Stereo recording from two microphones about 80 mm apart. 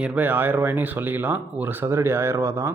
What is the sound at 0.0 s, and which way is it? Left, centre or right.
Speech, centre.